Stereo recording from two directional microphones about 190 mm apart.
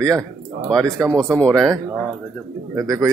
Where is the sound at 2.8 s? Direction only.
20° right (ahead or behind).